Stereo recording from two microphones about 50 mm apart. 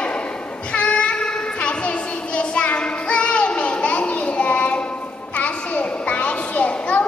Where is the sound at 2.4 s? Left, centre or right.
Left.